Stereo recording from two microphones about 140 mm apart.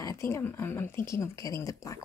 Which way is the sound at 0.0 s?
20° left (ahead or behind).